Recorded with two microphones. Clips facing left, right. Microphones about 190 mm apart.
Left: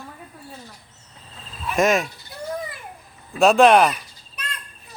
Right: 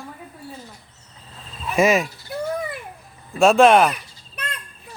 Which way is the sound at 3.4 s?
Centre (ahead or behind).